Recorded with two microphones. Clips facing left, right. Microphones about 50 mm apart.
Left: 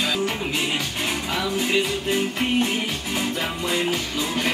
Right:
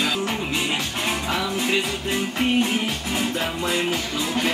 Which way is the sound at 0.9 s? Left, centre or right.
Centre.